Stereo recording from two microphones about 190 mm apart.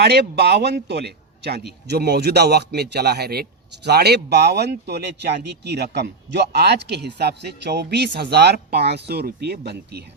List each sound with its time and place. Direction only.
0.0 s speech: 60° right (ahead or behind)